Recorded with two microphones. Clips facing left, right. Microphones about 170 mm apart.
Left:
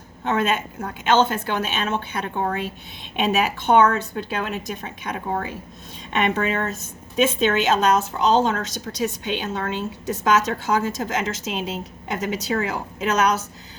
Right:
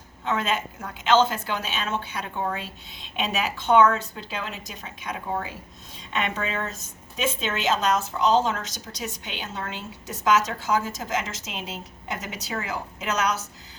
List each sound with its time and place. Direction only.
0.3 s a woman's voice: 60° left (ahead or behind)